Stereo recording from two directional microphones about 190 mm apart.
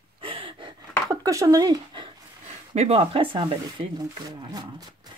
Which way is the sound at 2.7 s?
35° right (ahead or behind).